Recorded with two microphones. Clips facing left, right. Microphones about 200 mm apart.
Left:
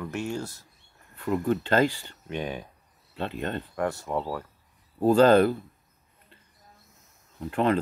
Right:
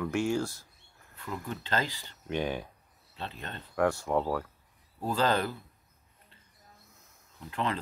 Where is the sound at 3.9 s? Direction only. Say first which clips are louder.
Right 1 dB; 5° left (ahead or behind).